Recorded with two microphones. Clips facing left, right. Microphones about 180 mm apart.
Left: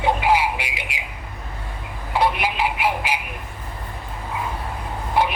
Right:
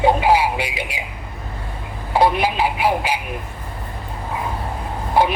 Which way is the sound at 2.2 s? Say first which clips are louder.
Right 4 dB; 35° right (ahead or behind).